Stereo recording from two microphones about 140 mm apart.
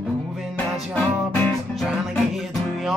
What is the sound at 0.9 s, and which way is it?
Music, 10° left (ahead or behind).